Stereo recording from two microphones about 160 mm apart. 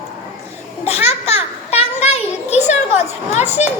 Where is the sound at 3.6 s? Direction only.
45° left (ahead or behind).